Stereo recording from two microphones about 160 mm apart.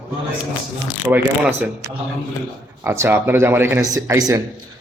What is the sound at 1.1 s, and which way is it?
Speech, 10° right (ahead or behind).